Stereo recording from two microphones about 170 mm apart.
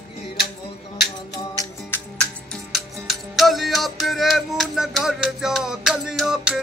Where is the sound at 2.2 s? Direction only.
Centre (ahead or behind).